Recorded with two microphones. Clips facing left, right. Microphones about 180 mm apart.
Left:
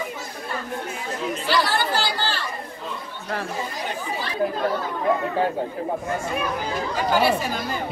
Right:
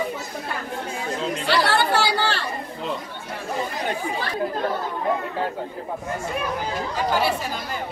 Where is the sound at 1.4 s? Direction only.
65° right (ahead or behind).